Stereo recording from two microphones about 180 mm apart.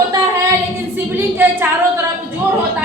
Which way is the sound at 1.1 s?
10° right (ahead or behind).